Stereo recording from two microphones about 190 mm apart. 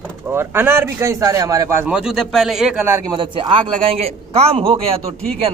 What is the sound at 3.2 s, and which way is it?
A woman's voice, 25° right (ahead or behind).